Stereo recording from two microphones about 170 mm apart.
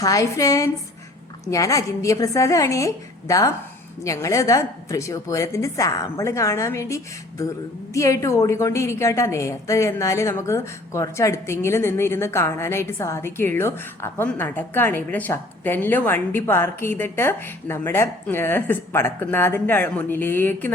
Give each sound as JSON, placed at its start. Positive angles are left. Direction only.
{"t": 0.0, "sound": "a woman's voice", "side_deg": 20}